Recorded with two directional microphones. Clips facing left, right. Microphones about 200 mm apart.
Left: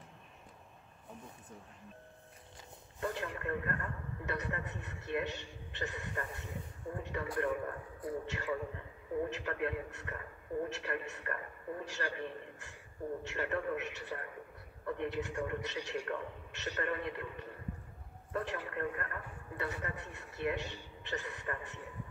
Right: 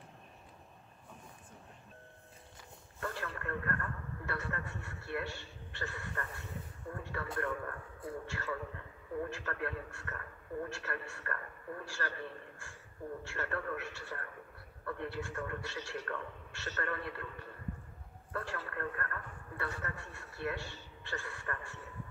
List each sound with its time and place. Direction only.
3.0 s a man's voice: 20° left (ahead or behind)